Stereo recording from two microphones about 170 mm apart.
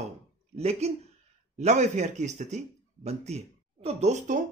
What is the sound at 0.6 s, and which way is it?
Speech, 40° right (ahead or behind).